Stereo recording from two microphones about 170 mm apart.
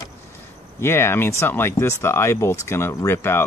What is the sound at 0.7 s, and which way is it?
Speech, 15° left (ahead or behind).